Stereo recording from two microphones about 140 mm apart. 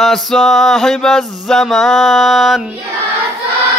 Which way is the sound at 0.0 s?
Centre (ahead or behind).